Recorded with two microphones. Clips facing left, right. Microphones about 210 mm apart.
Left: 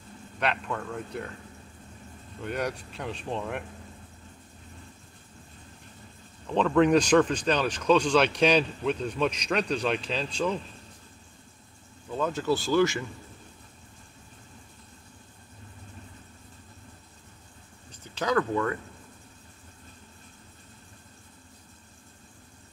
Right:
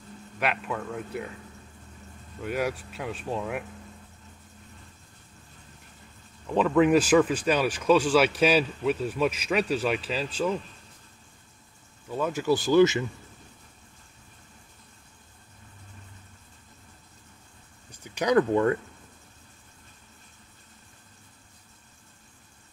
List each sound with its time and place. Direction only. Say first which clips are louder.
0.4 s speech: even; 5° right (ahead or behind)
2.4 s speech: right 2 dB; 5° right (ahead or behind)
6.5 s speech: right 1 dB; 5° right (ahead or behind)
12.1 s speech: right 2 dB; 10° right (ahead or behind)
18.0 s a sound: right 4 dB; 15° right (ahead or behind)
18.5 s speech: right 5 dB; 30° right (ahead or behind)